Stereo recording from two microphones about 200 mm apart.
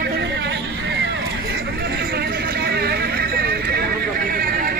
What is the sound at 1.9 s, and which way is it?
Vehicle, 55° right (ahead or behind).